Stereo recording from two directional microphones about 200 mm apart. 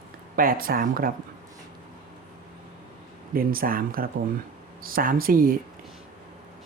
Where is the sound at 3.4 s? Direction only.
45° right (ahead or behind).